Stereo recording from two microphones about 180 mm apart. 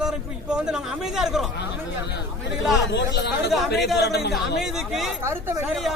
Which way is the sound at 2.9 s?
70° left (ahead or behind).